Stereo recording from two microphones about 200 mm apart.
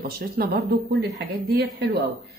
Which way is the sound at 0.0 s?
50° right (ahead or behind).